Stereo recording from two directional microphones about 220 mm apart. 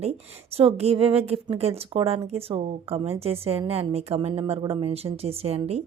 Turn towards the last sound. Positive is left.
turn(degrees=-30)  # may be behind; listen again after turning